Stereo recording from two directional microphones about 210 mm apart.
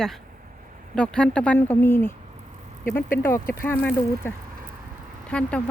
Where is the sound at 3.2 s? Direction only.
10° left (ahead or behind).